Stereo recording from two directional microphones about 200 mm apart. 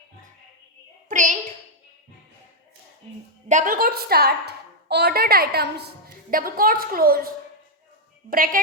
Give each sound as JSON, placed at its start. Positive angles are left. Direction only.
{"t": 1.0, "sound": "child singing", "side_deg": -40}
{"t": 3.5, "sound": "a woman's voice", "side_deg": -40}